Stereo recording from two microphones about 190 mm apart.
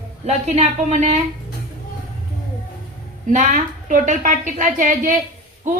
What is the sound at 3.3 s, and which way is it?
A woman's voice, 40° right (ahead or behind).